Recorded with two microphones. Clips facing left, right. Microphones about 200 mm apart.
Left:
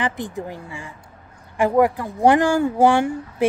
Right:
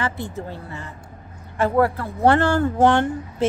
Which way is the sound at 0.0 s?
15° left (ahead or behind).